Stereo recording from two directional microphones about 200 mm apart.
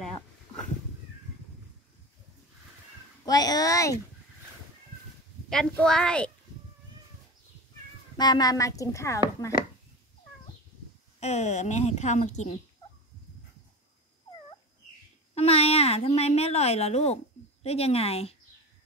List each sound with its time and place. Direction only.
3.3 s a child's voice: 20° left (ahead or behind)
5.5 s a woman's voice: 5° left (ahead or behind)
8.2 s a woman's voice: 20° left (ahead or behind)
11.1 s a woman's voice: 35° left (ahead or behind)
15.3 s a woman's voice: 30° left (ahead or behind)